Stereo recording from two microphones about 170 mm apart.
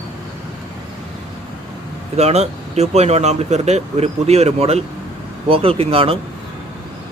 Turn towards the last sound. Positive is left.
turn(degrees=-35)  # may be behind; listen again after turning